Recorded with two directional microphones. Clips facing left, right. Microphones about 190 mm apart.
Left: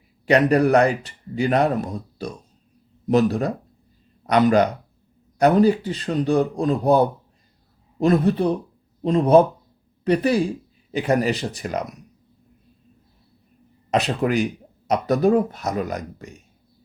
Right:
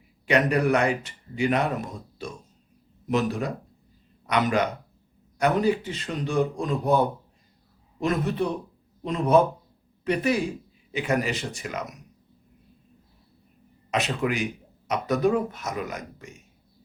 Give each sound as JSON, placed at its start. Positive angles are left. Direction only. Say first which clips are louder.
{"t": 0.3, "sound": "speech", "louder": "left 5 dB", "side_deg": 35}
{"t": 14.2, "sound": "speech", "louder": "left 6 dB", "side_deg": 40}